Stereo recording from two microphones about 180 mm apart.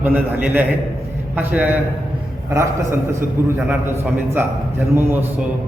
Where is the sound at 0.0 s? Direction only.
10° right (ahead or behind).